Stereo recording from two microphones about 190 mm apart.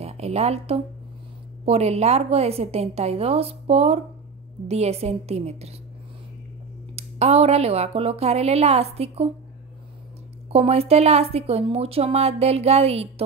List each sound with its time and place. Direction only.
0.0 s a woman's voice: 35° right (ahead or behind)
7.0 s a woman's voice: 35° right (ahead or behind)
10.5 s a woman's voice: 30° right (ahead or behind)